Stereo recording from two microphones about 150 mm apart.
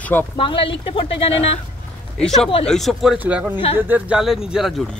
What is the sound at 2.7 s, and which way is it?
Speech, centre (ahead or behind).